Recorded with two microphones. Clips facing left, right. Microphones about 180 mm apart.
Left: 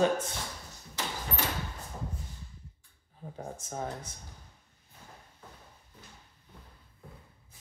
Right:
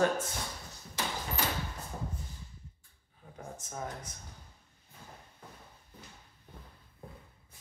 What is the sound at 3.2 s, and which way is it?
Speech, 35° left (ahead or behind).